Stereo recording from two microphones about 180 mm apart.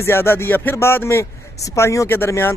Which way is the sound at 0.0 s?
15° left (ahead or behind).